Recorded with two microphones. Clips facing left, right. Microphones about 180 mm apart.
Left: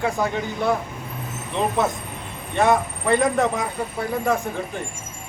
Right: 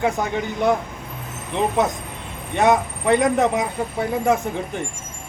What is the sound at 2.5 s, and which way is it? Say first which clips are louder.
Speech: right 1 dB; 15° right (ahead or behind).